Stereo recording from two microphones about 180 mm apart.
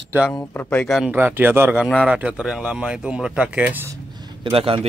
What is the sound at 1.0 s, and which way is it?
Speech, 10° right (ahead or behind).